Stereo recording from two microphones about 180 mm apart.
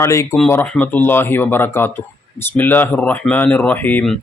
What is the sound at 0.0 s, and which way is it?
Speech, 15° left (ahead or behind).